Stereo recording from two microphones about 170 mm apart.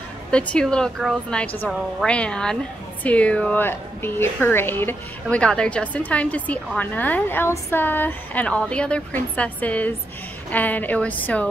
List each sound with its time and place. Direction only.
0.3 s a woman's voice: 5° left (ahead or behind)